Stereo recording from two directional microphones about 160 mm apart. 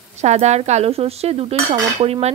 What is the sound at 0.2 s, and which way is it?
Speech, 45° right (ahead or behind).